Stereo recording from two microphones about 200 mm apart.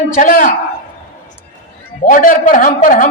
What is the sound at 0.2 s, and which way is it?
Speech, 45° left (ahead or behind).